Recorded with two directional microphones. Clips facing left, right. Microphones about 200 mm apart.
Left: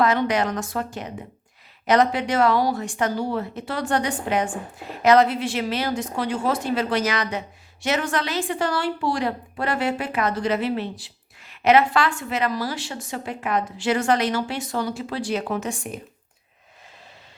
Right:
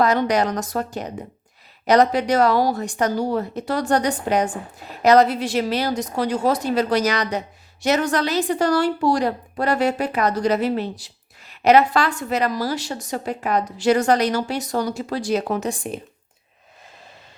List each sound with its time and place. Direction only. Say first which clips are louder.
0.0 s speech: right 2 dB; 40° right (ahead or behind)